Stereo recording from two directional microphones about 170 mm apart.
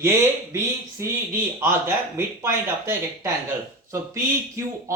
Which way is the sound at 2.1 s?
15° right (ahead or behind).